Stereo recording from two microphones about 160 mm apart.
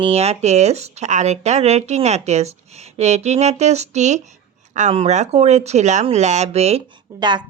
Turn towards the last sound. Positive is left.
turn(degrees=-30)  # may be behind; listen again after turning